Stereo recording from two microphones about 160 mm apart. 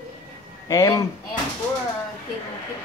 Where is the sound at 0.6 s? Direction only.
20° left (ahead or behind).